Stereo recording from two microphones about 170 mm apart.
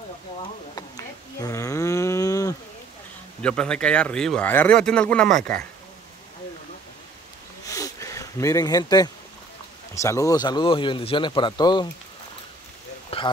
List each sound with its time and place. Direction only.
0.7 s livestock: 20° left (ahead or behind)
3.4 s speech: 5° left (ahead or behind)
7.6 s a sound: 20° left (ahead or behind)
9.9 s speech: 20° left (ahead or behind)
13.1 s speech: 35° left (ahead or behind)